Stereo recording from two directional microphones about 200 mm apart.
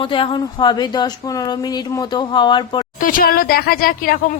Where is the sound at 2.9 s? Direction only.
45° left (ahead or behind).